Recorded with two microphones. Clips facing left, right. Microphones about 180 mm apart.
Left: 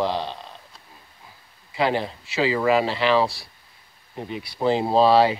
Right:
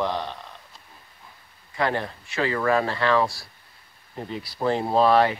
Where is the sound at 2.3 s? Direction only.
10° left (ahead or behind).